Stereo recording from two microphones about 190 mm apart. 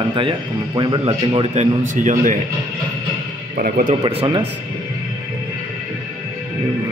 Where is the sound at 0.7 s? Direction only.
25° right (ahead or behind).